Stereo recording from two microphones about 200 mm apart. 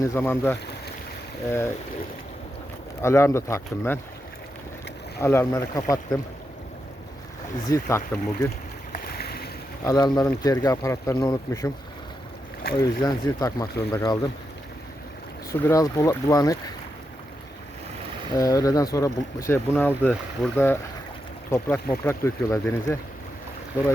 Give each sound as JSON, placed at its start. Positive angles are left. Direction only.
{"t": 0.0, "sound": "speech", "side_deg": 15}
{"t": 3.0, "sound": "speech", "side_deg": 15}
{"t": 5.2, "sound": "speech", "side_deg": 15}
{"t": 7.7, "sound": "speech", "side_deg": 15}
{"t": 8.9, "sound": "boat", "side_deg": 50}
{"t": 9.8, "sound": "speech", "side_deg": 20}
{"t": 12.7, "sound": "speech", "side_deg": 20}
{"t": 15.6, "sound": "speech", "side_deg": 15}
{"t": 18.3, "sound": "speech", "side_deg": 15}